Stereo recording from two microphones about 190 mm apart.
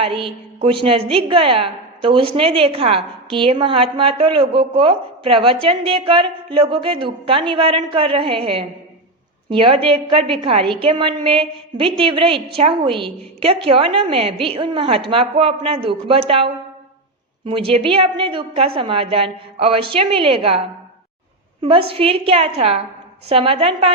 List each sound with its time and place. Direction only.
0.0 s a woman's voice: 30° right (ahead or behind)
21.6 s a woman's voice: 30° right (ahead or behind)